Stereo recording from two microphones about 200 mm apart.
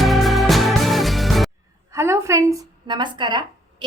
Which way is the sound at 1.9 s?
15° right (ahead or behind).